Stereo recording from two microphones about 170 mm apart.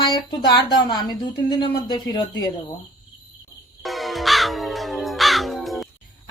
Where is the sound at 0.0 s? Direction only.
25° left (ahead or behind).